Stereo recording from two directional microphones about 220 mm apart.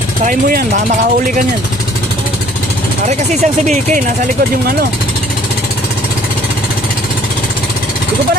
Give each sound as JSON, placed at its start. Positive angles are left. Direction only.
{"t": 0.3, "sound": "speech", "side_deg": -40}
{"t": 3.1, "sound": "speech", "side_deg": -35}